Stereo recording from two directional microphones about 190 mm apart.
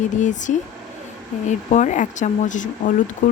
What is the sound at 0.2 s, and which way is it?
Speech, 40° left (ahead or behind).